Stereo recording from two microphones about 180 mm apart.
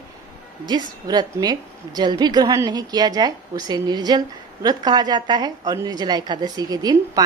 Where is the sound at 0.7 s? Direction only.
20° right (ahead or behind).